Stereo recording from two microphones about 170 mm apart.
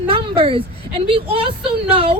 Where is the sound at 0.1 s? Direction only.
35° right (ahead or behind).